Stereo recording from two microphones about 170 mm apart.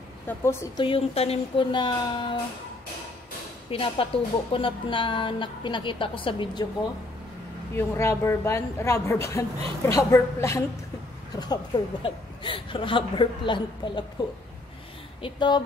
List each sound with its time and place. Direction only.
0.4 s a woman's voice: 15° left (ahead or behind)
0.8 s speech: 35° left (ahead or behind)
3.7 s speech: 30° left (ahead or behind)
7.7 s a woman's voice: 15° left (ahead or behind)
15.2 s speech: 25° left (ahead or behind)